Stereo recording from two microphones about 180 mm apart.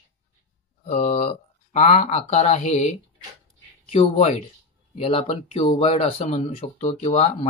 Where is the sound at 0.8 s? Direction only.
40° left (ahead or behind).